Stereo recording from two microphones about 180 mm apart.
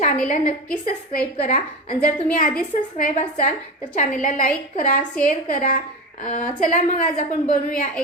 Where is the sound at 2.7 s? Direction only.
40° left (ahead or behind).